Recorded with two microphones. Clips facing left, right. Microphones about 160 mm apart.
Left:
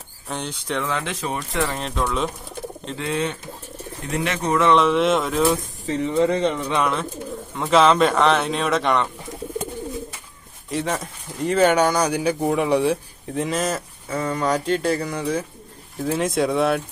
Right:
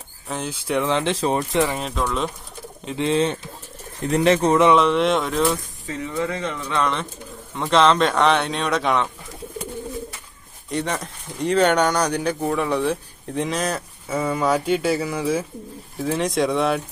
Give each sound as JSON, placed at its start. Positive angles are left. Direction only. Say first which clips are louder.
{"t": 0.3, "sound": "a man's voice", "louder": "right 2 dB", "side_deg": -5}
{"t": 0.8, "sound": "speech", "louder": "right 6 dB", "side_deg": -25}
{"t": 1.7, "sound": "a man's voice", "louder": "even", "side_deg": 0}
{"t": 3.0, "sound": "speech", "louder": "right 5 dB", "side_deg": -25}
{"t": 4.8, "sound": "a man's voice", "louder": "even", "side_deg": 0}
{"t": 5.9, "sound": "speech", "louder": "left 6 dB", "side_deg": 25}
{"t": 7.5, "sound": "a man's voice", "louder": "left 1 dB", "side_deg": 5}
{"t": 10.7, "sound": "speech", "louder": "even", "side_deg": 0}
{"t": 13.3, "sound": "a man's voice", "louder": "left 1 dB", "side_deg": 0}